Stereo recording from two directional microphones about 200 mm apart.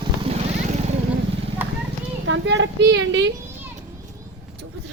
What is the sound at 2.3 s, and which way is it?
A woman's voice, 65° right (ahead or behind).